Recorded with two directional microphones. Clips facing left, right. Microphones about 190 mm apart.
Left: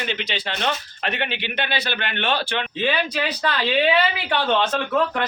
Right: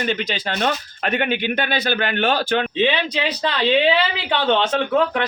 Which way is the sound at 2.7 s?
20° right (ahead or behind).